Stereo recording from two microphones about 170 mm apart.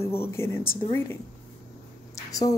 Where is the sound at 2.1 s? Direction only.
20° left (ahead or behind).